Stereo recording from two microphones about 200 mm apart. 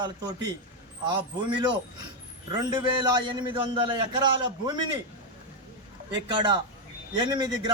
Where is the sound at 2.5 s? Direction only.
20° right (ahead or behind).